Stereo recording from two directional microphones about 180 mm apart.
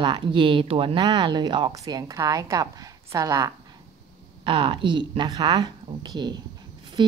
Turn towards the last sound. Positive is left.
turn(degrees=-25)  # may be behind; listen again after turning